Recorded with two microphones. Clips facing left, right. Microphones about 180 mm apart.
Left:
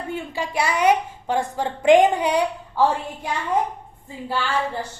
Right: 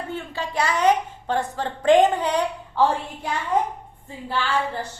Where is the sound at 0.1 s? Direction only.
10° left (ahead or behind).